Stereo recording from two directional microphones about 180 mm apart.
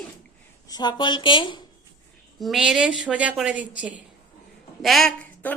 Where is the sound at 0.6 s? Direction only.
20° left (ahead or behind).